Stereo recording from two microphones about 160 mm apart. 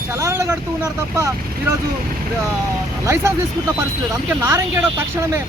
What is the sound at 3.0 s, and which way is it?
Speech, 20° right (ahead or behind).